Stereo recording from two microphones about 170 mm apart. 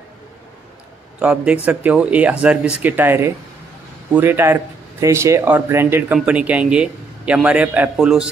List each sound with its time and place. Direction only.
1.2 s speech: 5° right (ahead or behind)